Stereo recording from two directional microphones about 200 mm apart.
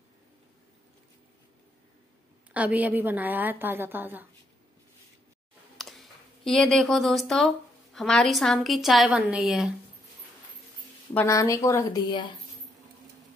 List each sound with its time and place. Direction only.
2.5 s a woman's voice: 10° right (ahead or behind)
5.8 s speech: centre (ahead or behind)
11.1 s speech: 15° left (ahead or behind)